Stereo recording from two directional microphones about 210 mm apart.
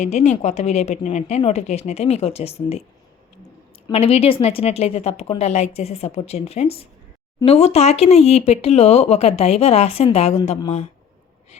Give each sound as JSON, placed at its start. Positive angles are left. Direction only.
{"t": 0.0, "sound": "speech", "side_deg": 35}
{"t": 3.9, "sound": "speech", "side_deg": 30}